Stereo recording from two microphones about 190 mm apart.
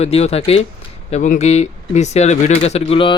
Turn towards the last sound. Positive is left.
turn(degrees=30)  # may be behind; listen again after turning